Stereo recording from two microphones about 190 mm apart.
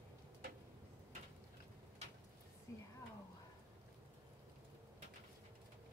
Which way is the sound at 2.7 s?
15° left (ahead or behind).